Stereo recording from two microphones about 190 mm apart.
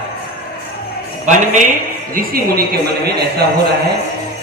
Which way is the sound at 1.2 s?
40° right (ahead or behind).